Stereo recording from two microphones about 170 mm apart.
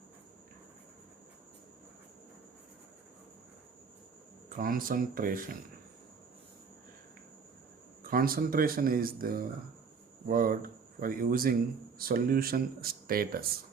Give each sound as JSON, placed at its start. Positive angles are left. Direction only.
{"t": 4.4, "sound": "speech", "side_deg": -55}
{"t": 8.0, "sound": "speech", "side_deg": -60}